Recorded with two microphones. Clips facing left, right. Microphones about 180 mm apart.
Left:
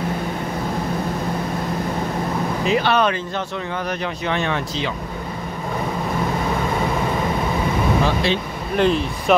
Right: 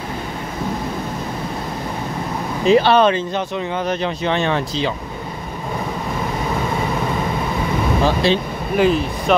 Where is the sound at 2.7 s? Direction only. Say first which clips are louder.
Right 6 dB; 30° right (ahead or behind).